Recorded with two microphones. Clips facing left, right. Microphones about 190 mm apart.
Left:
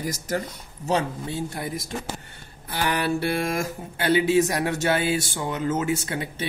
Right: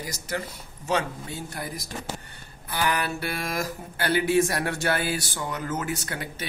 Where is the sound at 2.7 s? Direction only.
25° left (ahead or behind).